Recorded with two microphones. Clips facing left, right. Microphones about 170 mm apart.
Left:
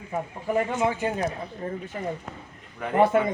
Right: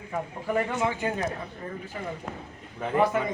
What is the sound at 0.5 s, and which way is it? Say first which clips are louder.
Speech: left 2 dB; 15° left (ahead or behind).